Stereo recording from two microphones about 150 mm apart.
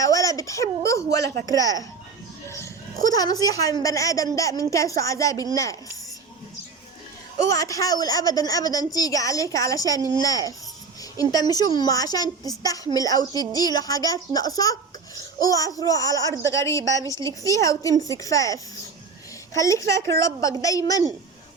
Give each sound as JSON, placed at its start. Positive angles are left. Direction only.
{"t": 0.0, "sound": "a woman's voice", "side_deg": 20}
{"t": 7.5, "sound": "a woman's voice", "side_deg": 25}